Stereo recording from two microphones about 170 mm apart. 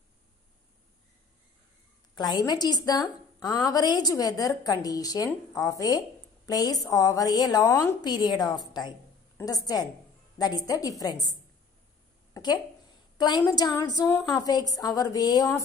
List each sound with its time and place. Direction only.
2.1 s a woman's voice: 25° left (ahead or behind)
12.4 s a woman's voice: 20° left (ahead or behind)